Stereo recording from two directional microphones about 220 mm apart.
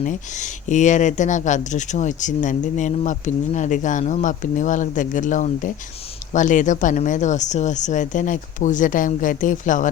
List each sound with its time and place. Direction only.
0.0 s speech: 35° left (ahead or behind)